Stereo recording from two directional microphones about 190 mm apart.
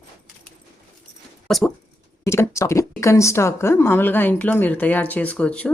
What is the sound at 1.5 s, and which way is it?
Speech, centre (ahead or behind).